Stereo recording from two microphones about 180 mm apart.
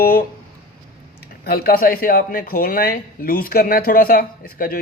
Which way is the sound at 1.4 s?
60° left (ahead or behind).